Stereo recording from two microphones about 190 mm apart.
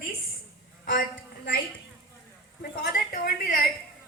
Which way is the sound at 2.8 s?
55° left (ahead or behind).